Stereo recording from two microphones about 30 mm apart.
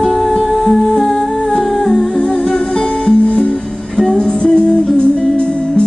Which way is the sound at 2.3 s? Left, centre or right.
Left.